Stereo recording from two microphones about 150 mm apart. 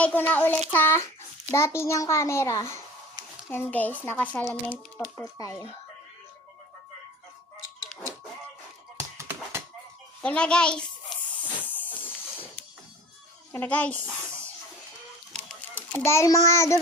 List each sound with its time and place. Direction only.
0.0 s a child's voice: 10° left (ahead or behind)
5.4 s a child's voice: 25° left (ahead or behind)
9.0 s tap: 15° right (ahead or behind)
10.2 s a sound: 5° left (ahead or behind)
13.5 s speech: 10° left (ahead or behind)
15.7 s a child's voice: 15° left (ahead or behind)